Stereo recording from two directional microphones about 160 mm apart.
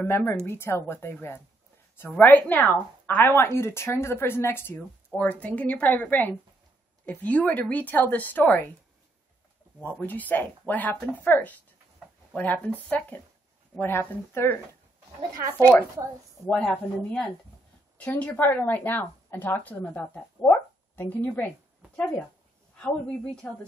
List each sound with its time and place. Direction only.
0.0 s a woman's voice: 15° left (ahead or behind)
9.8 s a woman's voice: 10° left (ahead or behind)
16.4 s a woman's voice: 5° left (ahead or behind)
23.4 s a woman's voice: 10° left (ahead or behind)